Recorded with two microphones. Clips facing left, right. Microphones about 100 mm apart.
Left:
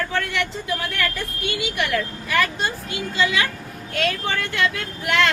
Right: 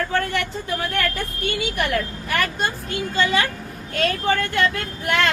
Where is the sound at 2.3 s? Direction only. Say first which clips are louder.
Left 2 dB; 50° right (ahead or behind).